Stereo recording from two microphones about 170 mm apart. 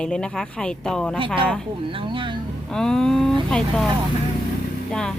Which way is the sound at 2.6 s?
5° left (ahead or behind).